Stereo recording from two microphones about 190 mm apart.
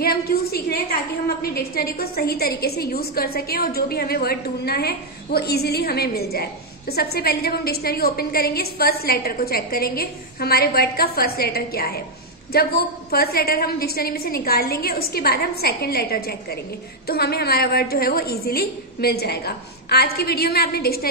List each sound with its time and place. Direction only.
0.0 s a woman's voice: 55° left (ahead or behind)